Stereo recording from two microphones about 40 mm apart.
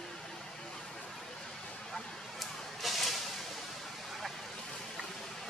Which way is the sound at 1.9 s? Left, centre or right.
Centre.